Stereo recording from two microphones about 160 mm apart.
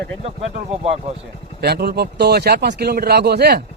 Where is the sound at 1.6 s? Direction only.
80° right.